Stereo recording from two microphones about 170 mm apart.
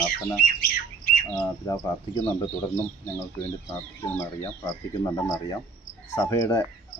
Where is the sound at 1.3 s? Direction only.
20° left (ahead or behind).